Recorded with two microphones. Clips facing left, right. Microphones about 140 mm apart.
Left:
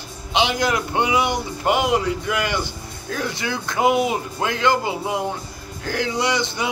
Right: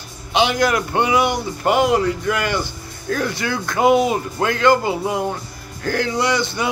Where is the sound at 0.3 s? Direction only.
20° left (ahead or behind).